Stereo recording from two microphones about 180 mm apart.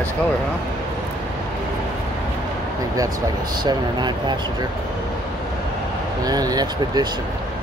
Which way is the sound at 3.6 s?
25° right (ahead or behind).